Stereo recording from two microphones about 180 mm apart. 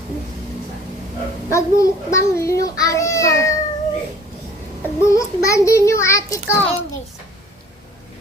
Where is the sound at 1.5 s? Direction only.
15° left (ahead or behind).